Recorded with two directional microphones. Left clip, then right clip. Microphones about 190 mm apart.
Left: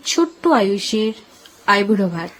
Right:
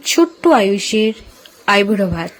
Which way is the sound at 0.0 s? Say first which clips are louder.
Right 4 dB; 15° right (ahead or behind).